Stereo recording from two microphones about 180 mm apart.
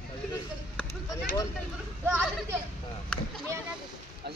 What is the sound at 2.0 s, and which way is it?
Speech, 10° right (ahead or behind).